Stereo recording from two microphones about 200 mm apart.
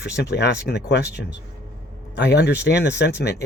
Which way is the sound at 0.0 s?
55° left (ahead or behind).